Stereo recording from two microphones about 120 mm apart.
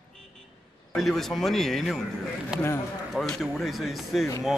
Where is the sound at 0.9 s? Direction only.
Centre (ahead or behind).